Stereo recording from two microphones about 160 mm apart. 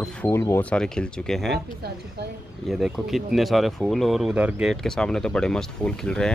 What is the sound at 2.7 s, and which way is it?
Speech, centre (ahead or behind).